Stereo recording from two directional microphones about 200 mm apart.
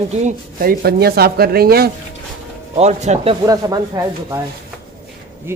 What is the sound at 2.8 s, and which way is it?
Speech, 35° right (ahead or behind).